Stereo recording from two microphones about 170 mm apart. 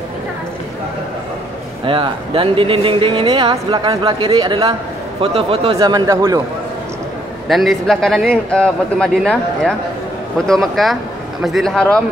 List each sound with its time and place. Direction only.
1.9 s a man's voice: 30° right (ahead or behind)
7.4 s a man's voice: centre (ahead or behind)